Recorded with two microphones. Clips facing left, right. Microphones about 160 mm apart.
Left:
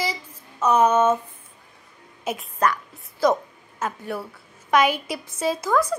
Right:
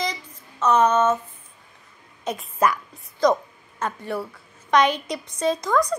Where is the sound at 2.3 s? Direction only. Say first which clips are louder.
Right 1 dB; 5° left (ahead or behind).